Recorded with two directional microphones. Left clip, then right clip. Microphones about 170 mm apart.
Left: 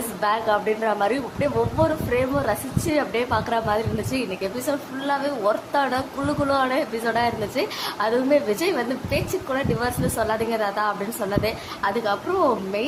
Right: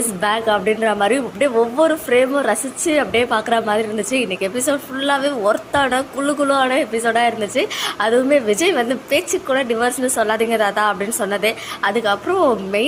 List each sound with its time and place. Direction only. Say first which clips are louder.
0.2 s speech: right 4 dB; 15° right (ahead or behind)